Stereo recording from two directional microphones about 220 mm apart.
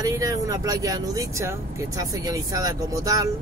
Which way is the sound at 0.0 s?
15° right (ahead or behind).